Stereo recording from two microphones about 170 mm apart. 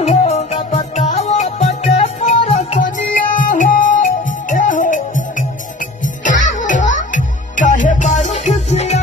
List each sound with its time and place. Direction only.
0.0 s music: 40° left (ahead or behind)
6.2 s music: 50° left (ahead or behind)